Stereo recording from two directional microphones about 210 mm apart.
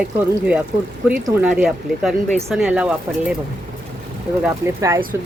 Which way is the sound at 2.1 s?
35° right (ahead or behind).